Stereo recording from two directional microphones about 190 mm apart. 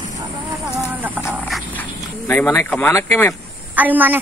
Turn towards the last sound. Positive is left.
turn(degrees=-10)  # may be behind; listen again after turning